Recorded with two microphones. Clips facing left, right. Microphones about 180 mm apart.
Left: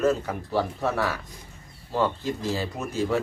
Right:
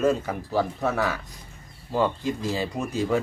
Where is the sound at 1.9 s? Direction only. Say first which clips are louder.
Right 1 dB; 15° right (ahead or behind).